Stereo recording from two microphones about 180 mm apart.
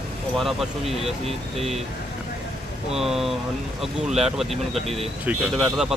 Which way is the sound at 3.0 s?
5° right (ahead or behind).